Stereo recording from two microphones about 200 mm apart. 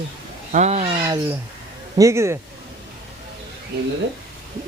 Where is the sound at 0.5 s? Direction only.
35° right (ahead or behind).